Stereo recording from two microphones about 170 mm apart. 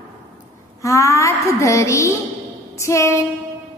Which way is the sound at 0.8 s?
15° left (ahead or behind).